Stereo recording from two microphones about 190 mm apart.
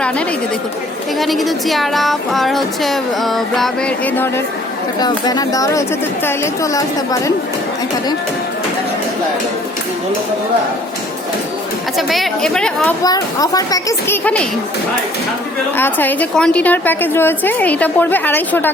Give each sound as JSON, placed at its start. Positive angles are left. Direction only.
{"t": 1.2, "sound": "speech", "side_deg": 0}
{"t": 4.9, "sound": "a woman's voice", "side_deg": 20}
{"t": 11.9, "sound": "speech", "side_deg": 0}
{"t": 13.0, "sound": "a woman's voice", "side_deg": 20}
{"t": 15.8, "sound": "a woman's voice", "side_deg": 10}